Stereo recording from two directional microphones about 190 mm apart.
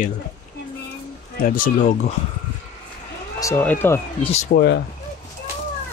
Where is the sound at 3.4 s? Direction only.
10° left (ahead or behind).